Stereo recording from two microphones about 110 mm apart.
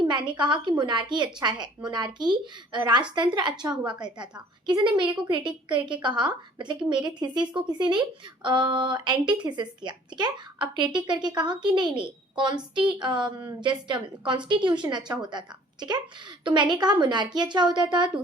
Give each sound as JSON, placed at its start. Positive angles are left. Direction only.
{"t": 0.1, "sound": "a woman's voice", "side_deg": -45}